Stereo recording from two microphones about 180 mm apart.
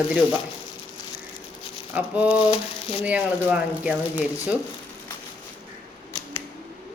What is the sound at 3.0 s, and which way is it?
Speech, 5° right (ahead or behind).